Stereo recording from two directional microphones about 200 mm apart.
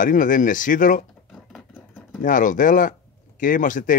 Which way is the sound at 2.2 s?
40° left (ahead or behind).